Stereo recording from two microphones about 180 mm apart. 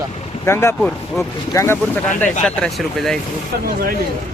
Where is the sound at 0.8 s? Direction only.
5° left (ahead or behind).